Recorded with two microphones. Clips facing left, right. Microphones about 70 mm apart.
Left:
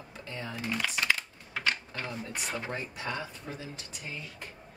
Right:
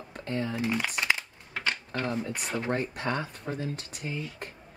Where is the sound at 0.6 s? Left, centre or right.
Centre.